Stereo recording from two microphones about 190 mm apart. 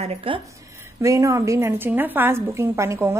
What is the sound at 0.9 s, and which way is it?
A woman's voice, 15° right (ahead or behind).